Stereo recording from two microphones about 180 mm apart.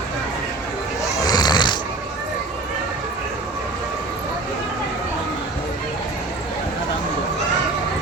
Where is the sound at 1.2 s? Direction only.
20° left (ahead or behind).